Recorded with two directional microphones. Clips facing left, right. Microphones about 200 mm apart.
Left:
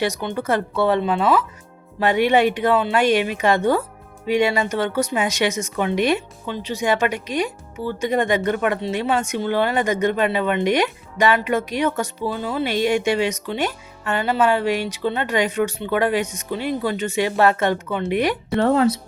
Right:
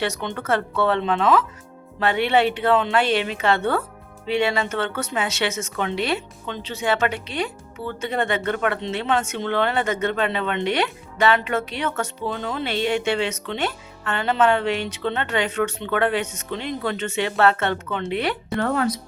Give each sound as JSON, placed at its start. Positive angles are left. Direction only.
{"t": 0.0, "sound": "speech", "side_deg": 10}
{"t": 18.6, "sound": "speech", "side_deg": 25}